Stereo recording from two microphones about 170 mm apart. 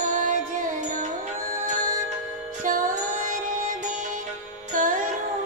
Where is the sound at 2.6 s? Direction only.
50° right (ahead or behind).